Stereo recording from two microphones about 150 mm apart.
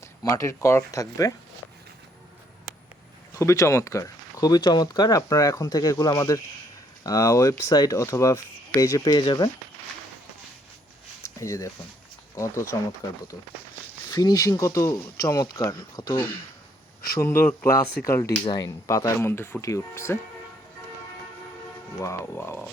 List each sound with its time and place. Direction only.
0.2 s speech: 20° left (ahead or behind)
3.3 s speech: 20° left (ahead or behind)
11.3 s speech: 20° left (ahead or behind)
12.7 s speech: 25° left (ahead or behind)
14.1 s speech: 25° left (ahead or behind)
22.0 s speech: 15° left (ahead or behind)